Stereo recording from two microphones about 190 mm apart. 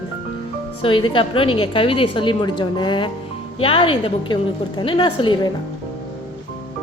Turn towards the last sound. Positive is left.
turn(degrees=25)  # may be behind; listen again after turning